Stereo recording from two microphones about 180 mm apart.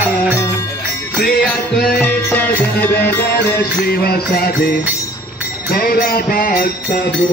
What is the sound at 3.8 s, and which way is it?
Music, 60° left (ahead or behind).